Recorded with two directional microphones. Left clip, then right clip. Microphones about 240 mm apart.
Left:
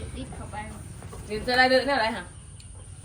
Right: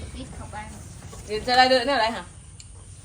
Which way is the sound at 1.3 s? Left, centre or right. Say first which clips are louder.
Right 3 dB; right.